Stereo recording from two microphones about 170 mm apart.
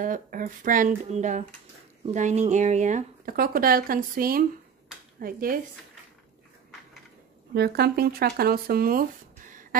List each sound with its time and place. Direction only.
0.0 s speech: 50° right (ahead or behind)
7.5 s speech: 70° right (ahead or behind); by 9.8 s 50° right (ahead or behind)